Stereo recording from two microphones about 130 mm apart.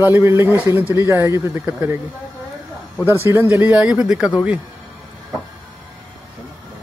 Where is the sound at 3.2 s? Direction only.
20° right (ahead or behind).